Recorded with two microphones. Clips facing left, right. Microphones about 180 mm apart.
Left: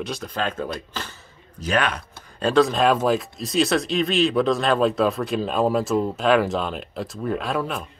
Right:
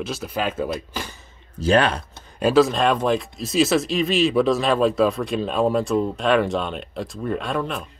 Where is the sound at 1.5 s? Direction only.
30° right (ahead or behind).